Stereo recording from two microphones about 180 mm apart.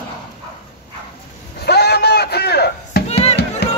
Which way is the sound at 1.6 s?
65° left (ahead or behind).